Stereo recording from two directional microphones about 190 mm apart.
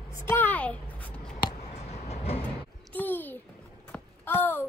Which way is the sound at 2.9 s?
10° left (ahead or behind).